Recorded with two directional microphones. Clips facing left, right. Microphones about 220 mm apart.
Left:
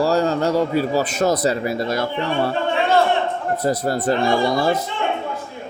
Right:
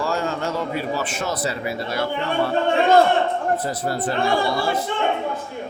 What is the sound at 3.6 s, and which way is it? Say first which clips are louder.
Speech: left 5 dB; 40° left (ahead or behind).